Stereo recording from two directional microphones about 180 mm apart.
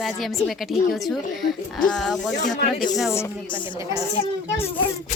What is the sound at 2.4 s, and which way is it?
Speech, 45° left (ahead or behind).